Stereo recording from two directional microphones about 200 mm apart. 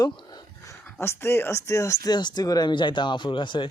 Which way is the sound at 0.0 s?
20° left (ahead or behind).